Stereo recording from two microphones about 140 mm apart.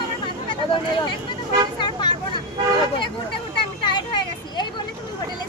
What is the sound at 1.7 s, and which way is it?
Vehicle, 35° left (ahead or behind).